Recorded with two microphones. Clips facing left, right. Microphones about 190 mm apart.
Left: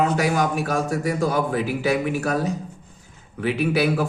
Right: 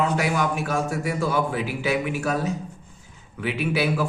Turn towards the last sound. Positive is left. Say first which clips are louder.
# left 3 dB
turn(degrees=45)  # may be behind; listen again after turning